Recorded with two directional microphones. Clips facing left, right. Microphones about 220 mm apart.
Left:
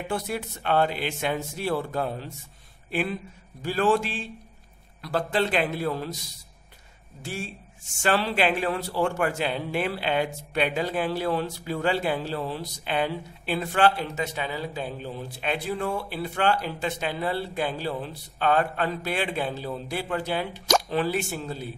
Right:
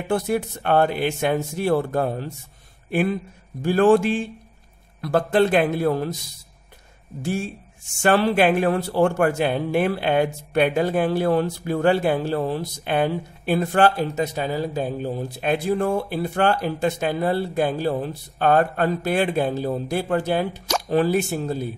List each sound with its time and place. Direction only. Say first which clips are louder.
0.1 s a man's voice: right 10 dB; 50° right (ahead or behind)
8.0 s a man's voice: right 6 dB; 50° right (ahead or behind)